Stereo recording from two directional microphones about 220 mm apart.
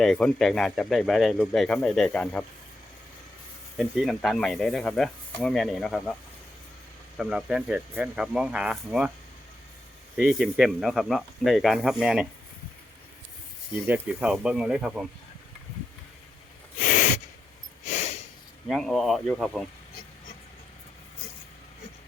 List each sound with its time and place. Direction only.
0.0 s speech: centre (ahead or behind)
3.8 s speech: centre (ahead or behind)
7.2 s speech: 5° right (ahead or behind)
10.2 s speech: centre (ahead or behind)
13.8 s speech: 5° right (ahead or behind)
16.8 s gasp: 35° left (ahead or behind)
17.8 s snort: 30° left (ahead or behind)
18.7 s speech: centre (ahead or behind)